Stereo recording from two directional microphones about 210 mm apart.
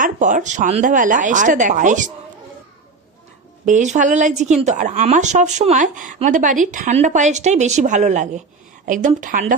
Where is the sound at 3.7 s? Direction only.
35° right (ahead or behind).